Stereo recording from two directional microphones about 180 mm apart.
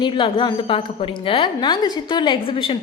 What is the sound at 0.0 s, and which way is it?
A woman's voice, 25° left (ahead or behind).